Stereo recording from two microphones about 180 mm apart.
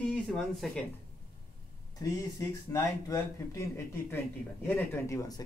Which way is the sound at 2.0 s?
20° left (ahead or behind).